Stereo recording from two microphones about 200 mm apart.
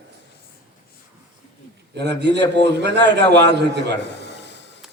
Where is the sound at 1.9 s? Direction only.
55° right (ahead or behind).